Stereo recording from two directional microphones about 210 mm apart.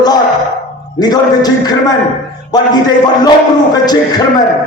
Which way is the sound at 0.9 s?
20° left (ahead or behind).